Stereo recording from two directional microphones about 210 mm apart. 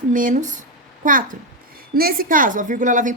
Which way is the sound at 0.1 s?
40° right (ahead or behind).